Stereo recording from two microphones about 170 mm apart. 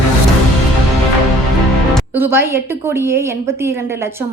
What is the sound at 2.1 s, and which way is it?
A woman's voice, 15° right (ahead or behind).